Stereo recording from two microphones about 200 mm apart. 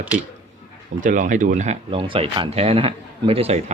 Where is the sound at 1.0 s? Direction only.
40° right (ahead or behind).